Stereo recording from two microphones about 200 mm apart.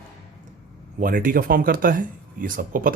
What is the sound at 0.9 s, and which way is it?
Speech, 45° right (ahead or behind).